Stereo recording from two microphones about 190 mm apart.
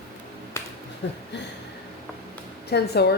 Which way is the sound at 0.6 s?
15° left (ahead or behind).